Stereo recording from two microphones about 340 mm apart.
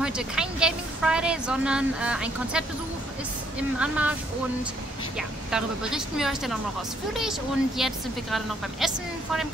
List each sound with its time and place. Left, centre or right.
0.0 s a woman's voice: centre
3.8 s a woman's voice: centre